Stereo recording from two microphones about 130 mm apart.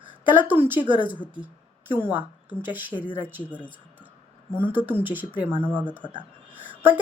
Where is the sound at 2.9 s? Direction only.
40° left (ahead or behind).